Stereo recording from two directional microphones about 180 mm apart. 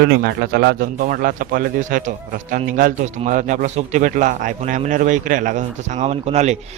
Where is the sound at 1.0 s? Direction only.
50° right (ahead or behind).